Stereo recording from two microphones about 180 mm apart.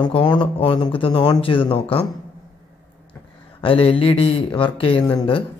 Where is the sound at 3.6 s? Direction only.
30° left (ahead or behind).